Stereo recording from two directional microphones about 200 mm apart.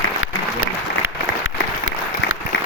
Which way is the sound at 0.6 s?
85° left.